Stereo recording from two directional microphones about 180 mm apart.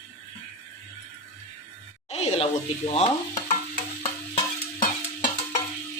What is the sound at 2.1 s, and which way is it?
Speech, 35° left (ahead or behind).